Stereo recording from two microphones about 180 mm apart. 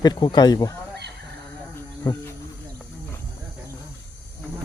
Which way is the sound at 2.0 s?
15° left (ahead or behind).